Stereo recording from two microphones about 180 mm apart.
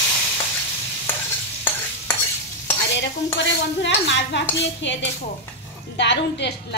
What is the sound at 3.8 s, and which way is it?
A woman's voice, 80° left.